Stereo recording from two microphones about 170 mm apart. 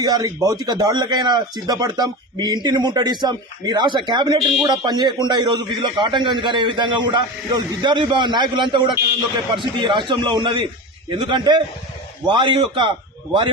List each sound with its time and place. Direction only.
0.0 s speech: 20° right (ahead or behind)